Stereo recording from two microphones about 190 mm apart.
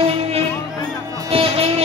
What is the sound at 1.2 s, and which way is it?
Music, 30° right (ahead or behind).